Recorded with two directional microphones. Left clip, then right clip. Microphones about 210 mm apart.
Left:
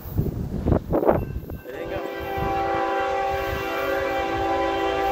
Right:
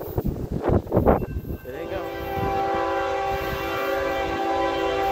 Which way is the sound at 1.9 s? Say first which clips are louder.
Even; 25° right (ahead or behind).